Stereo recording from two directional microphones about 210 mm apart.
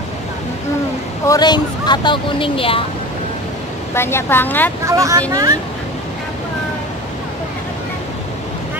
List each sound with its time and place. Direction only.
1.2 s speech: 15° left (ahead or behind)
3.9 s a woman's voice: 10° left (ahead or behind)
4.8 s speech: 15° right (ahead or behind)